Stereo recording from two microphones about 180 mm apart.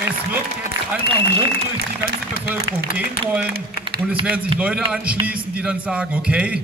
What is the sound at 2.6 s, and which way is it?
Speech, 55° left (ahead or behind).